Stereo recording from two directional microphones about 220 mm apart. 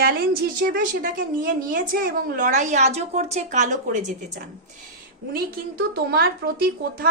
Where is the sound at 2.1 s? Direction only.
35° right (ahead or behind).